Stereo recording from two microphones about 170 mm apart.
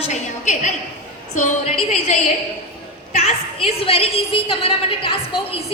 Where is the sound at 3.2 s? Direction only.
35° left (ahead or behind).